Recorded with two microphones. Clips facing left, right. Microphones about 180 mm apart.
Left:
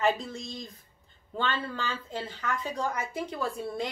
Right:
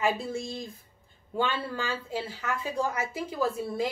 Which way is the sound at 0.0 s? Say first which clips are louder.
Even; 10° right (ahead or behind).